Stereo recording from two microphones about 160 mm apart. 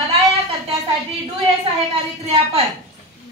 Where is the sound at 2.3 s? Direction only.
40° right (ahead or behind).